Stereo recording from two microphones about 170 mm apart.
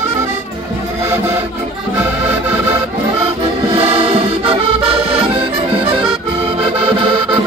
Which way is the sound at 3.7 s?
35° right (ahead or behind).